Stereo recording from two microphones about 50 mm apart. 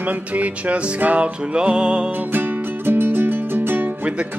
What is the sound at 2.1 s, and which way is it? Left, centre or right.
Music, right.